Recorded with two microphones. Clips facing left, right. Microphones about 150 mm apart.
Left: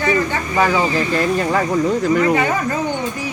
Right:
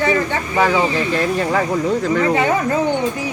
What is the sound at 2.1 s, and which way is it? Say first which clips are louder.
Speech: left 2 dB; 10° left (ahead or behind).